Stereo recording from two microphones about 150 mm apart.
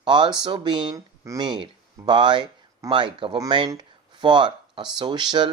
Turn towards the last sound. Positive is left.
turn(degrees=-30)  # may be behind; listen again after turning